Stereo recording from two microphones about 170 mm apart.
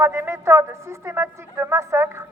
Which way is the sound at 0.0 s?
15° right (ahead or behind).